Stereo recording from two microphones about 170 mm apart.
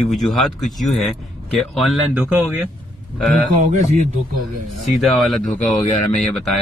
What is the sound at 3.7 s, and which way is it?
Speech, 45° right (ahead or behind).